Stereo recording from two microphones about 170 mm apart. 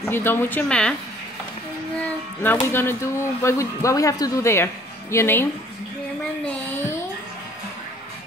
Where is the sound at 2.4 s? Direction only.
15° left (ahead or behind).